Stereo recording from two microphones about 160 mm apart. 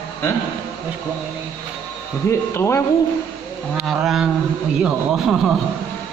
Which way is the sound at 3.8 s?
Centre (ahead or behind).